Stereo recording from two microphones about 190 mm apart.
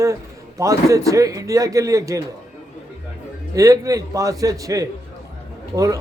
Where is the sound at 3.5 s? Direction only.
15° right (ahead or behind).